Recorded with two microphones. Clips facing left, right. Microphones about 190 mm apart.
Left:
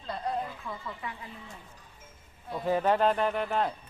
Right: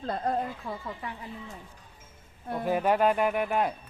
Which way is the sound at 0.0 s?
50° right (ahead or behind).